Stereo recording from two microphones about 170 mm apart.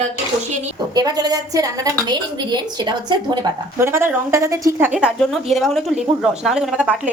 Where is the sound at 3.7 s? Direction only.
15° right (ahead or behind).